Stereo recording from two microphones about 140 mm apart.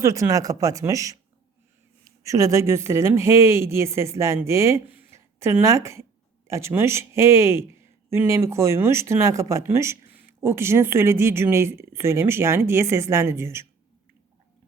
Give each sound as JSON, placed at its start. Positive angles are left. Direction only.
{"t": 0.0, "sound": "speech", "side_deg": -20}